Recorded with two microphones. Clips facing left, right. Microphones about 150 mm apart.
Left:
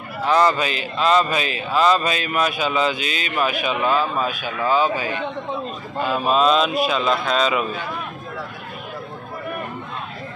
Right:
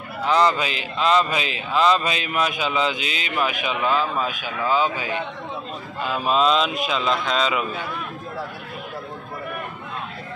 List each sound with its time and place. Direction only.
0.2 s speech: 15° right (ahead or behind)
6.2 s mantra: 20° right (ahead or behind)